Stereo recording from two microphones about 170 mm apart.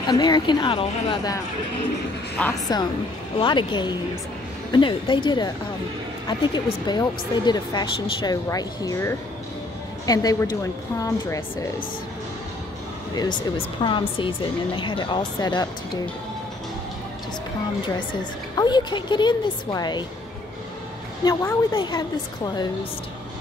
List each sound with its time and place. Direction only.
0.0 s a woman's voice: 25° left (ahead or behind)
2.4 s a woman's voice: 5° left (ahead or behind)
3.3 s a woman's voice: 25° left (ahead or behind)
13.1 s a woman's voice: 25° left (ahead or behind)
18.6 s a woman's voice: 25° left (ahead or behind)
21.2 s a woman's voice: 20° left (ahead or behind)